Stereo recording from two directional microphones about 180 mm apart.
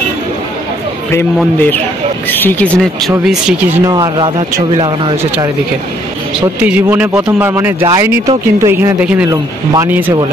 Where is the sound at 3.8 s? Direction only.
20° right (ahead or behind).